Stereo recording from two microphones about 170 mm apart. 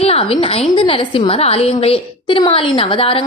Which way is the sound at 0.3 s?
35° left (ahead or behind).